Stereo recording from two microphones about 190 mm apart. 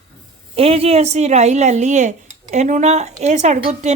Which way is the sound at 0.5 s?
30° right (ahead or behind).